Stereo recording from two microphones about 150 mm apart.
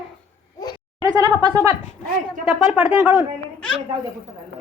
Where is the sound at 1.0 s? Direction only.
25° right (ahead or behind).